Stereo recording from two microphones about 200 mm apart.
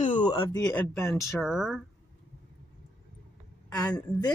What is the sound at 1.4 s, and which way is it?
Speech, centre (ahead or behind).